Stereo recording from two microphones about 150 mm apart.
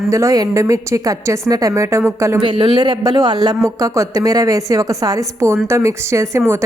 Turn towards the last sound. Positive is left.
turn(degrees=-15)  # may be behind; listen again after turning